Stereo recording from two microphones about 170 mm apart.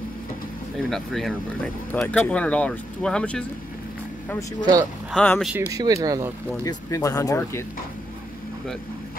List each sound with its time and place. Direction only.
0.8 s speech: centre (ahead or behind)
5.1 s speech: 5° left (ahead or behind)
5.7 s speech: 20° right (ahead or behind)
6.6 s speech: 20° left (ahead or behind)